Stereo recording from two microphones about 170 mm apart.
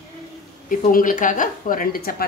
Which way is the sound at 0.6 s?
55° left (ahead or behind).